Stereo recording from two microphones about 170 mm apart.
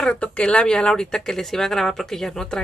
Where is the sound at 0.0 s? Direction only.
5° left (ahead or behind).